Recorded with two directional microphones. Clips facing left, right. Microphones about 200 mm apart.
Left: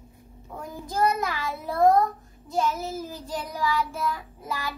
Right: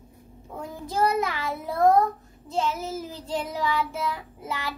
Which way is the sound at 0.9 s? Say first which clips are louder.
Right 1 dB; 20° right (ahead or behind).